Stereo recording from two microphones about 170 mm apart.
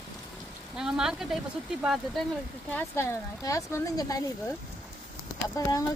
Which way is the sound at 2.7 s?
15° left (ahead or behind).